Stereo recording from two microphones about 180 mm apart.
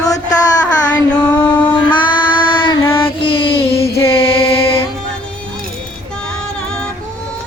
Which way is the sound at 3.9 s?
15° left (ahead or behind).